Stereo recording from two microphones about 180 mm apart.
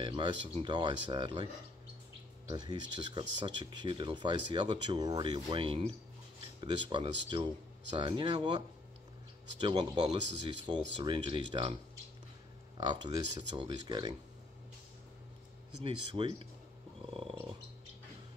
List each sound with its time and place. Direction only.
0.0 s speech: 25° right (ahead or behind)
12.7 s speech: 25° right (ahead or behind)
15.8 s speech: 30° right (ahead or behind)
17.0 s a sound: 30° right (ahead or behind)